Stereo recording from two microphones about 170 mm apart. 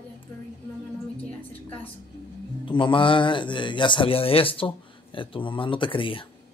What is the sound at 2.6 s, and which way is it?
Speech, 30° left (ahead or behind).